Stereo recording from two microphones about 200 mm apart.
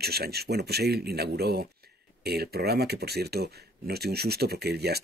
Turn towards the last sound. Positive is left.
turn(degrees=-55)  # may be behind; listen again after turning